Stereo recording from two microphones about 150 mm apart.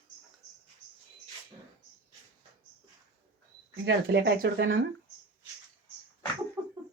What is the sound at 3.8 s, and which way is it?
Speech, 90° right.